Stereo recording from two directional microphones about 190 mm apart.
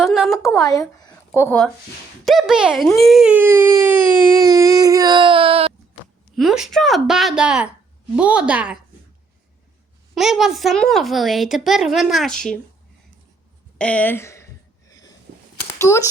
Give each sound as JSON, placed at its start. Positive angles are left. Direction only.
{"t": 0.0, "sound": "a woman's voice", "side_deg": 0}
{"t": 0.5, "sound": "speech", "side_deg": 20}
{"t": 6.3, "sound": "a woman's voice", "side_deg": 0}
{"t": 10.2, "sound": "a woman's voice", "side_deg": 0}
{"t": 13.7, "sound": "a sound", "side_deg": 5}
{"t": 15.8, "sound": "speech", "side_deg": 15}